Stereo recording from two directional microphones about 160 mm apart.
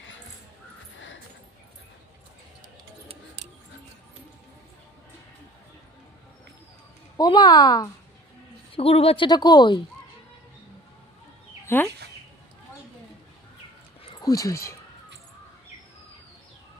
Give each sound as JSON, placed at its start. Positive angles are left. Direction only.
{"t": 7.2, "sound": "speech", "side_deg": 30}
{"t": 11.6, "sound": "chicken", "side_deg": 15}
{"t": 14.0, "sound": "a sound", "side_deg": 25}